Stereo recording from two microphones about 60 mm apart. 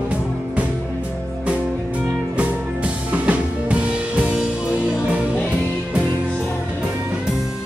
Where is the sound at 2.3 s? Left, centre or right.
Right.